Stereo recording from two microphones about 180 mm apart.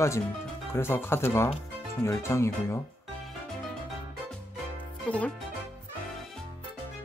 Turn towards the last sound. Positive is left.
turn(degrees=5)  # may be behind; listen again after turning